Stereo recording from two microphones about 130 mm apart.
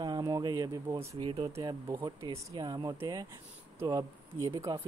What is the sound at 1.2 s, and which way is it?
Speech, 40° right (ahead or behind).